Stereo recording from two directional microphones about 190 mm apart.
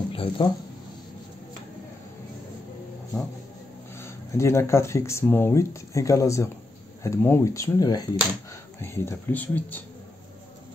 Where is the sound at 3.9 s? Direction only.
15° left (ahead or behind).